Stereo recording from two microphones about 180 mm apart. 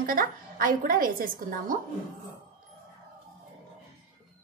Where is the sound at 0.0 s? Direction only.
50° right (ahead or behind).